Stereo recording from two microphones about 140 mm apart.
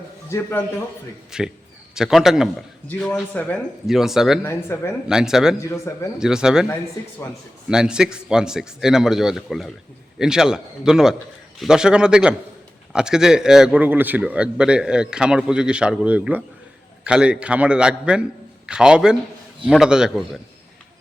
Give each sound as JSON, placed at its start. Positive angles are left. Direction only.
{"t": 0.3, "sound": "speech", "side_deg": 15}
{"t": 1.3, "sound": "a man's voice", "side_deg": -5}
{"t": 2.8, "sound": "speech", "side_deg": 10}
{"t": 3.8, "sound": "a man's voice", "side_deg": -5}
{"t": 4.4, "sound": "speech", "side_deg": 20}
{"t": 5.0, "sound": "a man's voice", "side_deg": -5}
{"t": 5.5, "sound": "speech", "side_deg": 20}
{"t": 6.1, "sound": "a man's voice", "side_deg": -5}
{"t": 7.7, "sound": "a man's voice", "side_deg": -5}